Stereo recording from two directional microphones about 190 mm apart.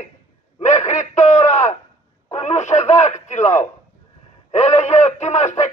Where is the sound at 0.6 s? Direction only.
40° left (ahead or behind).